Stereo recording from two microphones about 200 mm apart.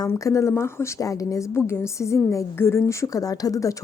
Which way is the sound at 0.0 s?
15° left (ahead or behind).